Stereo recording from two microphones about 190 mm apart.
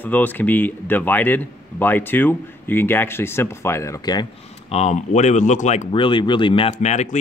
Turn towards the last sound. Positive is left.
turn(degrees=40)  # may be behind; listen again after turning